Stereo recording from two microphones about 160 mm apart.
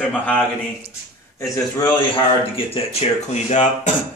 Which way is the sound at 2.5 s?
35° left (ahead or behind).